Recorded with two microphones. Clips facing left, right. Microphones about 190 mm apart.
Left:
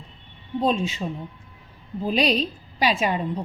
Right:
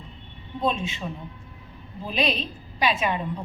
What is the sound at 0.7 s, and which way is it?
Speech, 40° left (ahead or behind).